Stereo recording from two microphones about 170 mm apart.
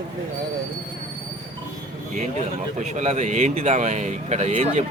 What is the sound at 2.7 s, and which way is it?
Speech, 45° right (ahead or behind).